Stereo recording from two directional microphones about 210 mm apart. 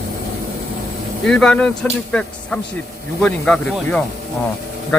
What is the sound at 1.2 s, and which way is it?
Speech, 5° left (ahead or behind).